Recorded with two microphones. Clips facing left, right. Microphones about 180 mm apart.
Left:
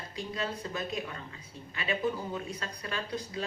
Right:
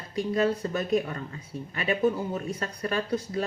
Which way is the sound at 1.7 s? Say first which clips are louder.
Right 6 dB; 50° right (ahead or behind).